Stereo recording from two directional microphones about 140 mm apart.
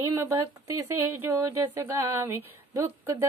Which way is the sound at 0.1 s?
25° right (ahead or behind).